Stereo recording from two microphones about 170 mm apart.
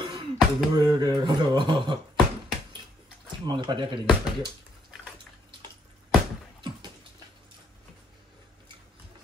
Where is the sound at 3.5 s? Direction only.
25° right (ahead or behind).